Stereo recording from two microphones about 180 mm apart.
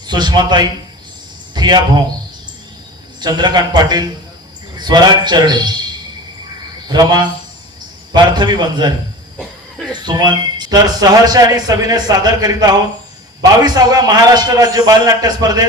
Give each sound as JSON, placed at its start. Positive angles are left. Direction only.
{"t": 0.1, "sound": "a man's voice", "side_deg": -25}
{"t": 1.5, "sound": "a sound", "side_deg": -25}
{"t": 3.2, "sound": "a man's voice", "side_deg": -25}
{"t": 6.8, "sound": "a man's voice", "side_deg": -25}
{"t": 9.9, "sound": "a man's voice", "side_deg": -25}